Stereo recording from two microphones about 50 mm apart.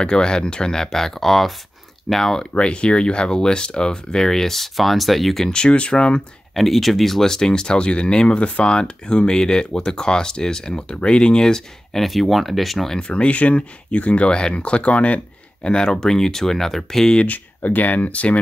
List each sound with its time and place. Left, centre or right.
0.0 s speech: centre
2.5 s speech: left; by 5.5 s centre
5.5 s speech: centre
6.5 s speech: centre
13.0 s speech: left; by 17.2 s centre
17.2 s speech: left